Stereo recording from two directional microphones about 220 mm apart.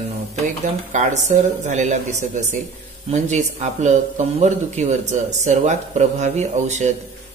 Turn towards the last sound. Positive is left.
turn(degrees=-30)  # may be behind; listen again after turning